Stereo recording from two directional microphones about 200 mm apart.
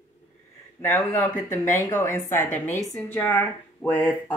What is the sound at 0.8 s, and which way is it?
Speech, 10° left (ahead or behind).